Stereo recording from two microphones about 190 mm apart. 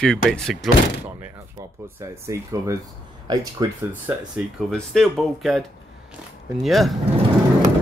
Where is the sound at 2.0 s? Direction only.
15° right (ahead or behind).